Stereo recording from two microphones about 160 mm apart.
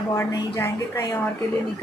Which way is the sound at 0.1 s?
15° left (ahead or behind).